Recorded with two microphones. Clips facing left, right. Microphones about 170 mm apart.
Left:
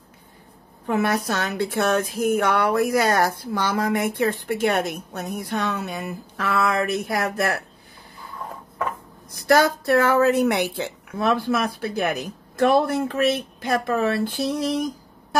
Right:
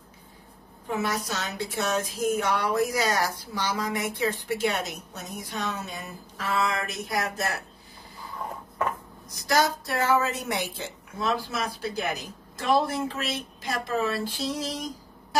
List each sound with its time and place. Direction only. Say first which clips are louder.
0.8 s speech: left 7 dB; 60° left (ahead or behind)
9.3 s speech: left 6 dB; 55° left (ahead or behind)